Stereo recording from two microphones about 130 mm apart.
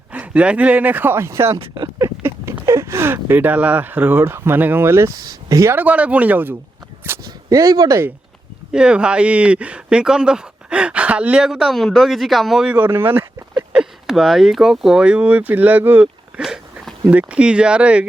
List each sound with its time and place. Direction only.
0.1 s speech: 10° right (ahead or behind)
1.5 s speech: 40° right (ahead or behind)
2.0 s speech: 25° right (ahead or behind)
7.3 s speech: 25° right (ahead or behind)
8.7 s speech: 5° right (ahead or behind)
13.7 s speech: 5° right (ahead or behind)